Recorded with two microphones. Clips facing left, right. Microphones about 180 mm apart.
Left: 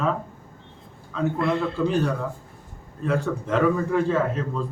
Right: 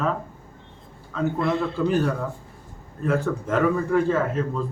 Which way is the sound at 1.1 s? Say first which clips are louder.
Even; centre (ahead or behind).